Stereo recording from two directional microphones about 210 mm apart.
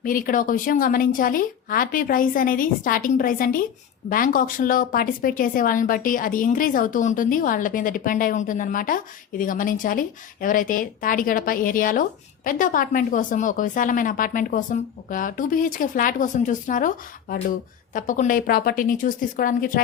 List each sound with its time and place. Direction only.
0.0 s a woman's voice: 40° left (ahead or behind)